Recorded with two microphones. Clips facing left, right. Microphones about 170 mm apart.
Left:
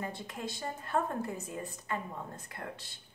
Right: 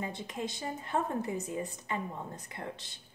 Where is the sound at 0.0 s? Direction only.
15° right (ahead or behind).